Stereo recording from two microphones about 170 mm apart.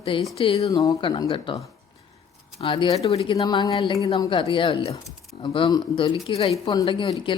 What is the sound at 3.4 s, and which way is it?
A woman's voice, 20° left (ahead or behind).